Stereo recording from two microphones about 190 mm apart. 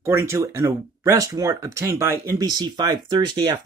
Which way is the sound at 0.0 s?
15° right (ahead or behind).